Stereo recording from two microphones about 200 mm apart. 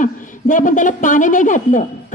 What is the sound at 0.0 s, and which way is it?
A woman's voice, 40° left (ahead or behind).